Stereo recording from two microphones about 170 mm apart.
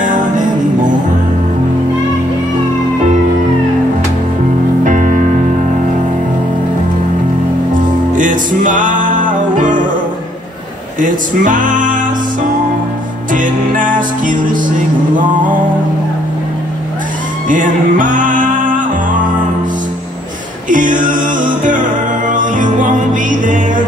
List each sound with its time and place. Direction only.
4.8 s music: 45° right (ahead or behind)
8.2 s music: 50° right (ahead or behind)
11.0 s music: 50° right (ahead or behind)
13.3 s music: 50° right (ahead or behind)
17.5 s music: 50° right (ahead or behind)
20.7 s music: 50° right (ahead or behind)